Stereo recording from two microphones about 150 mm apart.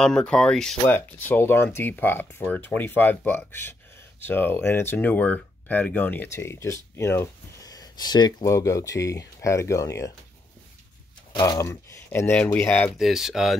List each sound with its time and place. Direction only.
0.0 s speech: 5° left (ahead or behind)
11.3 s speech: 25° left (ahead or behind)
12.1 s speech: 10° left (ahead or behind)
12.9 s speech: centre (ahead or behind)